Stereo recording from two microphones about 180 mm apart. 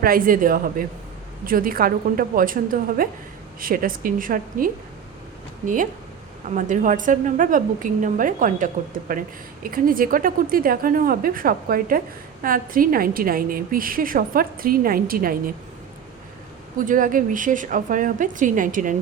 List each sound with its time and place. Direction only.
0.0 s a woman's voice: 50° right (ahead or behind)
16.7 s a woman's voice: 50° right (ahead or behind)